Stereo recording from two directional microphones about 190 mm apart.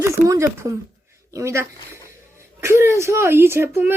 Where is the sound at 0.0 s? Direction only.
15° right (ahead or behind).